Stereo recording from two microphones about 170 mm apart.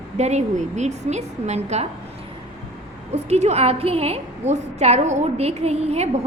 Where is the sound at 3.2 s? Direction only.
40° right (ahead or behind).